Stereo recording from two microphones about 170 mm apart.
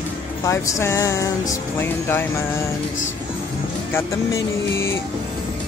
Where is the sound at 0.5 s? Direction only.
15° left (ahead or behind).